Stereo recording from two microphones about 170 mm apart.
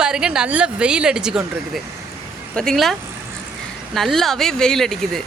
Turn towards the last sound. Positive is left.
turn(degrees=0)  # may be behind; listen again after turning